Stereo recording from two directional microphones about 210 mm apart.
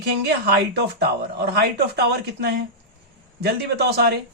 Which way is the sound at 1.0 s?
50° right (ahead or behind).